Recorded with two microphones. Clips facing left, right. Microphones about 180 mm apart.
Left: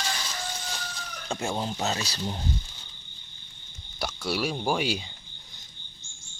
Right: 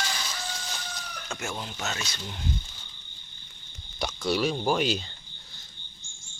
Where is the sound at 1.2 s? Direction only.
30° left (ahead or behind).